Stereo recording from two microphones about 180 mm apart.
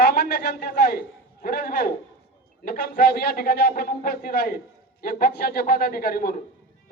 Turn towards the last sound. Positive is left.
turn(degrees=55)  # may be behind; listen again after turning